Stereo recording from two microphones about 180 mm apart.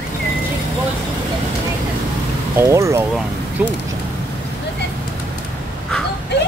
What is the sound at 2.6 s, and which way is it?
Speech, 15° right (ahead or behind).